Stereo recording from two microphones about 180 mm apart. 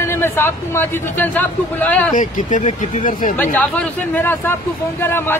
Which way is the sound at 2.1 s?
45° left (ahead or behind).